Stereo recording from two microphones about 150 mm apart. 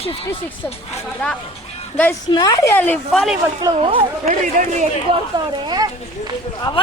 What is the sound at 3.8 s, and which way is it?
Speech, 40° right (ahead or behind).